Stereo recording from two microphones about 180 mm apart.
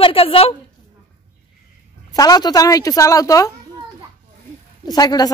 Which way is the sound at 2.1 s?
20° left (ahead or behind).